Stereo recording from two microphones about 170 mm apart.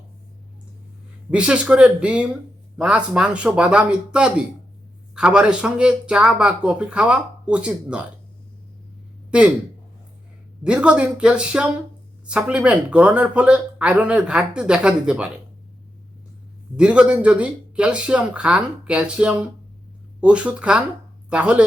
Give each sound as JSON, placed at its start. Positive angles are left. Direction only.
{"t": 1.3, "sound": "speech", "side_deg": -5}
{"t": 10.6, "sound": "speech", "side_deg": -5}
{"t": 16.7, "sound": "speech", "side_deg": -5}